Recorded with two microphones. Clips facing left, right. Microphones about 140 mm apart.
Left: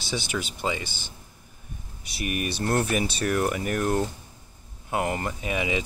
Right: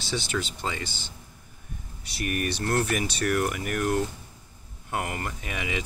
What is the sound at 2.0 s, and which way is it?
Speech, 20° left (ahead or behind).